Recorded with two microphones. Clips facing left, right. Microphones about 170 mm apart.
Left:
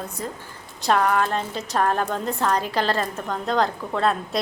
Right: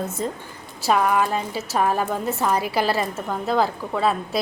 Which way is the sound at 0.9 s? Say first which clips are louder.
Right 1 dB; 5° right (ahead or behind).